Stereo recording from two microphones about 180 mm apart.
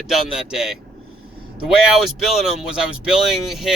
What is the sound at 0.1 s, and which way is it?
Speech, 5° right (ahead or behind).